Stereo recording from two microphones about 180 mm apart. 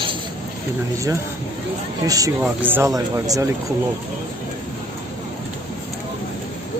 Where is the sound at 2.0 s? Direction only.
20° right (ahead or behind).